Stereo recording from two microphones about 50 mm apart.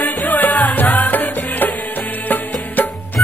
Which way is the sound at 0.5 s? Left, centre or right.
Left.